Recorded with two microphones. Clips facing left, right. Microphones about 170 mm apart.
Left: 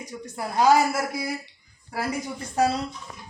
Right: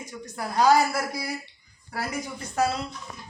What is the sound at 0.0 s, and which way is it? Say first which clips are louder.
Speech: left 1 dB; 25° left (ahead or behind).